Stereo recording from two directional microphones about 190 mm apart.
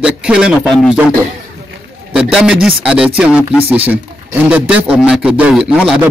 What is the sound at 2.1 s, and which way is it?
A man's voice, 5° right (ahead or behind).